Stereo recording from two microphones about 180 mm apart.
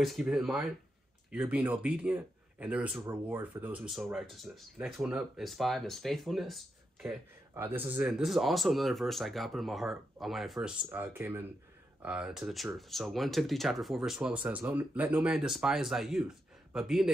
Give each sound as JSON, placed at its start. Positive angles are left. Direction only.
{"t": 0.0, "sound": "speech", "side_deg": 0}
{"t": 7.5, "sound": "speech", "side_deg": -10}
{"t": 10.9, "sound": "speech", "side_deg": -10}